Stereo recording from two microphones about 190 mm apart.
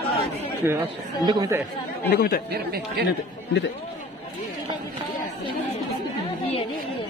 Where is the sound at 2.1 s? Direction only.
50° left (ahead or behind).